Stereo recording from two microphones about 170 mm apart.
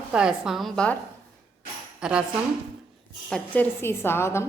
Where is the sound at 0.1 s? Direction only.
5° right (ahead or behind).